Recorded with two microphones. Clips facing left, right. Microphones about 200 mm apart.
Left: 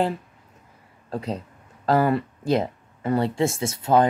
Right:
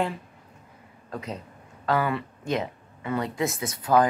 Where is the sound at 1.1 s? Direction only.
30° left (ahead or behind).